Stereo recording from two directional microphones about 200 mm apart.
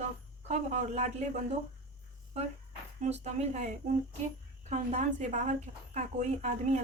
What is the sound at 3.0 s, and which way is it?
A woman's voice, 35° right (ahead or behind).